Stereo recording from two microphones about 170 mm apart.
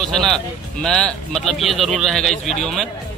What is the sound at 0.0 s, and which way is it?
Speech, centre (ahead or behind).